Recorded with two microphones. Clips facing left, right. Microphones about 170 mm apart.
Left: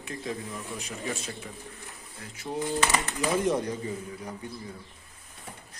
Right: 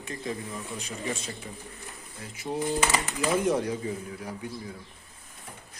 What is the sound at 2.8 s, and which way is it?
Speech, 20° right (ahead or behind).